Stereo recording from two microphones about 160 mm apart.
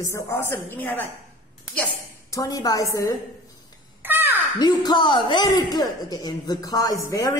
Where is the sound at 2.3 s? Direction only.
20° left (ahead or behind).